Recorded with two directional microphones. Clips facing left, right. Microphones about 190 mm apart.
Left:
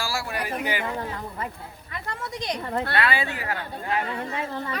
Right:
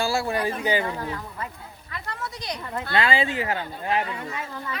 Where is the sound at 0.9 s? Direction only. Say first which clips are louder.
Left 1 dB; 25° left (ahead or behind).